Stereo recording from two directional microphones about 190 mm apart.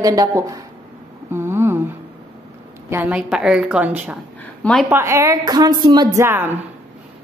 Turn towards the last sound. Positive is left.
turn(degrees=-10)  # may be behind; listen again after turning